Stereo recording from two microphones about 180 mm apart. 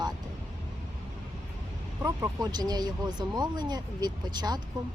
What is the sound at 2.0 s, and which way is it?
Speech, 20° right (ahead or behind).